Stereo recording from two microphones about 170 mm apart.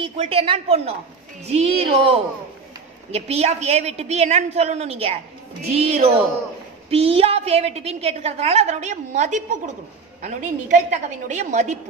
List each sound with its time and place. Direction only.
0.0 s a woman's voice: 35° right (ahead or behind)
3.1 s a woman's voice: 35° right (ahead or behind)